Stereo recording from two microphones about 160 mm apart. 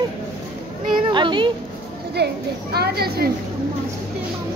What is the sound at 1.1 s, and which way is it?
Speech, 30° right (ahead or behind).